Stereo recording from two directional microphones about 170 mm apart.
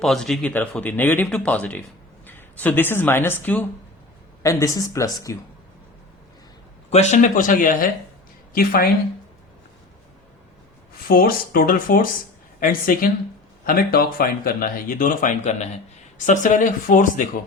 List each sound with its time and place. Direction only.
0.0 s speech: centre (ahead or behind); by 5.4 s 20° left (ahead or behind)
6.9 s speech: 45° left (ahead or behind); by 8.9 s 60° left (ahead or behind)
11.1 s speech: 60° left (ahead or behind)